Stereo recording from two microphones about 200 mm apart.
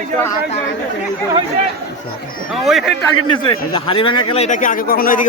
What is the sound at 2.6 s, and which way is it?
Speech, centre (ahead or behind).